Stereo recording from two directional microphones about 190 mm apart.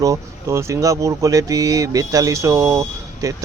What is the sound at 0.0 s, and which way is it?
Speech, 15° right (ahead or behind).